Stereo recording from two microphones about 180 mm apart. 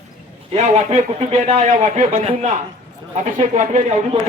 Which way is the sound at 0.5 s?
35° right (ahead or behind).